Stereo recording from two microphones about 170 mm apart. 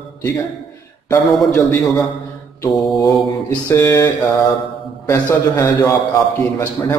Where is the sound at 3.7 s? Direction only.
20° left (ahead or behind).